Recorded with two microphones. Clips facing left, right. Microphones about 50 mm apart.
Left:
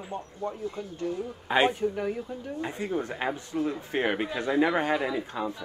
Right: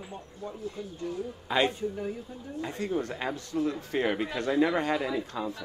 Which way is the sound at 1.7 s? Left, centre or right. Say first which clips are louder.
Left 4 dB; left.